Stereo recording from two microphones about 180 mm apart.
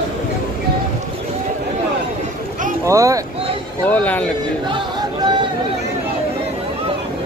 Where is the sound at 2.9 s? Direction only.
15° right (ahead or behind).